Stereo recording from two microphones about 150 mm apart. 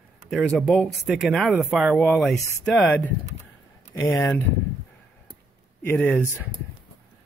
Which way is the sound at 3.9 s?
20° left (ahead or behind).